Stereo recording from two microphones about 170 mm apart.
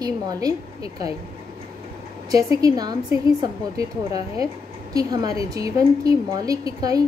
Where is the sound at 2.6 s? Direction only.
25° right (ahead or behind).